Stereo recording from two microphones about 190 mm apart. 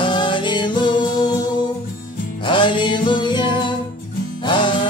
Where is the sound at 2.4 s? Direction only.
25° left (ahead or behind).